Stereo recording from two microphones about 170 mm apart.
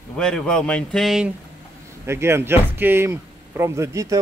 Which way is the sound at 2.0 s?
15° right (ahead or behind).